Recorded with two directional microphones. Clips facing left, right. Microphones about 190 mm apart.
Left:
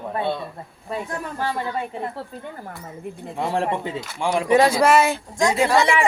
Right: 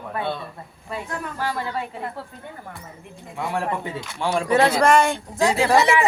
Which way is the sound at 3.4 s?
25° left (ahead or behind).